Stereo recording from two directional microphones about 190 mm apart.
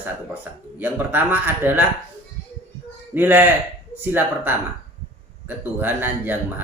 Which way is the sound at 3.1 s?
10° right (ahead or behind).